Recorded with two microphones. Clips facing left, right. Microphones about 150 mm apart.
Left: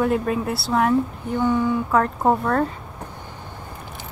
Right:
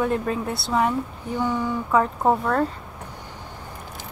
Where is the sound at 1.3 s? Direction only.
10° right (ahead or behind).